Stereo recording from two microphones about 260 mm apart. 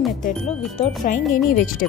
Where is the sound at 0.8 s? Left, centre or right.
Left.